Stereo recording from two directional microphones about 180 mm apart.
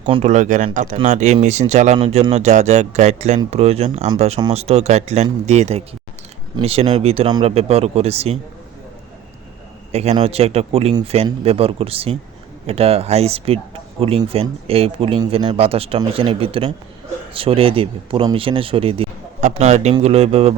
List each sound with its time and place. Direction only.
0.0 s speech: 35° right (ahead or behind)
9.9 s speech: 35° right (ahead or behind)